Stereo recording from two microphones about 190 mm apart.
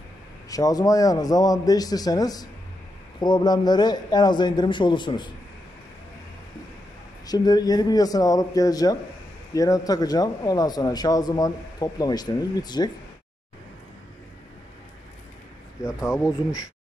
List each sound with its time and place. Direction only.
0.5 s speech: 20° left (ahead or behind)
7.2 s speech: 20° left (ahead or behind)
15.8 s speech: 15° left (ahead or behind)